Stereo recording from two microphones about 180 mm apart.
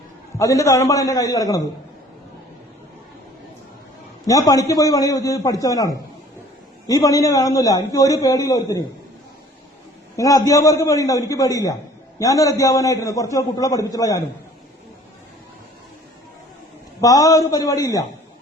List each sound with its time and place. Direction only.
0.3 s a man's voice: 15° left (ahead or behind)
4.3 s a man's voice: 20° left (ahead or behind)
10.2 s a man's voice: 20° left (ahead or behind)
17.0 s a man's voice: 20° left (ahead or behind)